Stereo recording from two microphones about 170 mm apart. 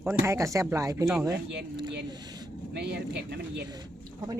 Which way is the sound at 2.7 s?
80° right.